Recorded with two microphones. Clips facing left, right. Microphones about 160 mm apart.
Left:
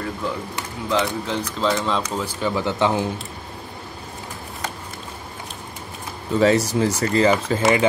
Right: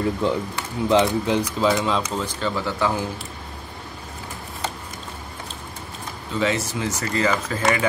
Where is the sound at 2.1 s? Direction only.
10° left (ahead or behind).